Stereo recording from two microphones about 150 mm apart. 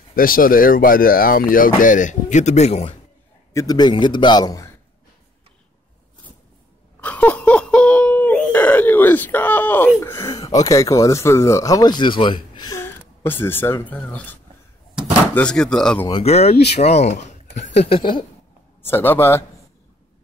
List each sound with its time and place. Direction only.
0.1 s speech: 70° left (ahead or behind); by 2.9 s 45° left (ahead or behind)
3.5 s speech: 25° left (ahead or behind)
7.0 s wail: 10° left (ahead or behind)
10.0 s speech: 20° left (ahead or behind)
12.7 s speech: 15° left (ahead or behind)
16.1 s speech: 40° left (ahead or behind)
18.8 s a man's voice: 15° left (ahead or behind)